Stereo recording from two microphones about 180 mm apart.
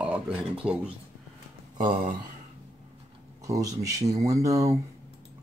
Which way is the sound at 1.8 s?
50° right (ahead or behind).